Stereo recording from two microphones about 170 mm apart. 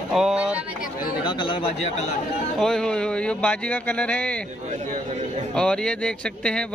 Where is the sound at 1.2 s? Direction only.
30° left (ahead or behind).